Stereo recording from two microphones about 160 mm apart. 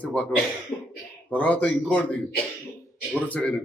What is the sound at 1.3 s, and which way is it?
Speech, 10° left (ahead or behind).